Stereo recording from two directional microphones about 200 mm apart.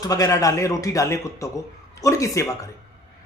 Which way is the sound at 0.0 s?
20° left (ahead or behind).